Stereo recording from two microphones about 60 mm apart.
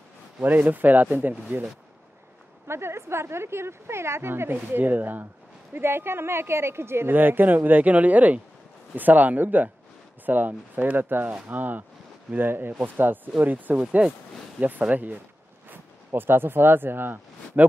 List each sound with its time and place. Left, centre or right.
0.4 s speech: right
2.7 s a woman's voice: right